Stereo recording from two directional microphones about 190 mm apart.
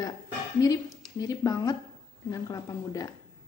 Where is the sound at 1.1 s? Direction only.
20° left (ahead or behind).